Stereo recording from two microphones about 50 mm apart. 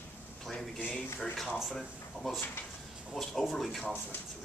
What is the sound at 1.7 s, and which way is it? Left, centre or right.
A man's voice, centre.